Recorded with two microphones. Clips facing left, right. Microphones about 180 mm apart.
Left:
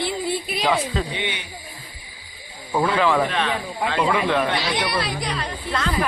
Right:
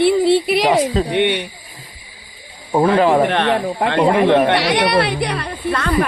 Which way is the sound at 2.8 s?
45° right (ahead or behind).